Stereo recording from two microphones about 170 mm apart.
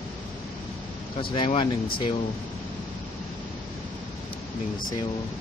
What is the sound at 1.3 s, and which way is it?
Speech, 30° left (ahead or behind).